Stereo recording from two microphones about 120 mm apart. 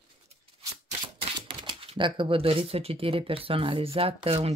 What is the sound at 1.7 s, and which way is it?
Speech, 45° right (ahead or behind).